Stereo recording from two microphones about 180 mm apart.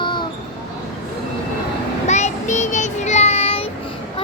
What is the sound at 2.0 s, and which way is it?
Child singing, 40° left (ahead or behind).